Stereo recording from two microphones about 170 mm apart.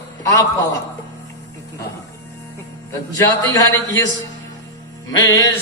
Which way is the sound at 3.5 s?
20° left (ahead or behind).